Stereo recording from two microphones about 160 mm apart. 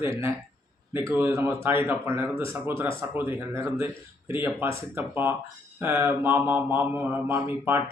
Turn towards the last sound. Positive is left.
turn(degrees=-15)  # may be behind; listen again after turning